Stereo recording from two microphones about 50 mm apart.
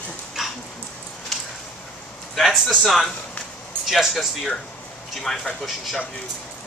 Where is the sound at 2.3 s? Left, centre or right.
Centre.